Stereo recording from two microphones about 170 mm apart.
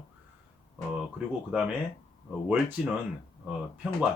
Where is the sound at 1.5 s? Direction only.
5° right (ahead or behind).